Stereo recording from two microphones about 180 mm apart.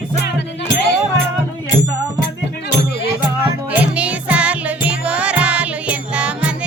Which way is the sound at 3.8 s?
10° right (ahead or behind).